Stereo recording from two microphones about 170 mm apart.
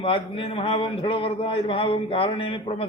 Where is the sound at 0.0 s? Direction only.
30° left (ahead or behind).